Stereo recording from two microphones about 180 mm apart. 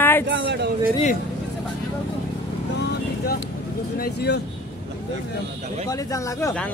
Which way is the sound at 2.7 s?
60° left (ahead or behind).